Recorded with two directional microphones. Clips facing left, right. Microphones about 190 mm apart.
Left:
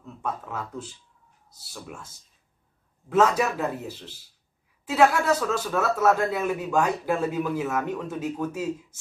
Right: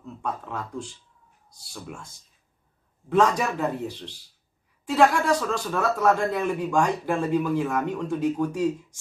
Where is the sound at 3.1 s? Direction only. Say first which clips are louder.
Even; 5° left (ahead or behind).